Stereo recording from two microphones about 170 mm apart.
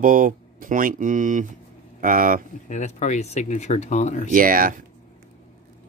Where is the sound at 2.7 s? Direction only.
45° left (ahead or behind).